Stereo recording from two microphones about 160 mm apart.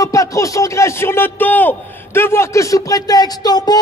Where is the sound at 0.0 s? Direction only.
20° left (ahead or behind).